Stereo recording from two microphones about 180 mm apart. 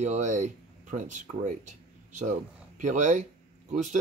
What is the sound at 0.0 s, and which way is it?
Speech, 40° right (ahead or behind).